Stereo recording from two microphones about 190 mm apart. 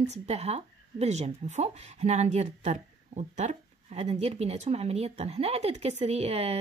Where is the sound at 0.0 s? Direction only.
35° right (ahead or behind).